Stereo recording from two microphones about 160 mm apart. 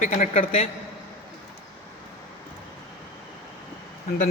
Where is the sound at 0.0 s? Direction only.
40° left (ahead or behind).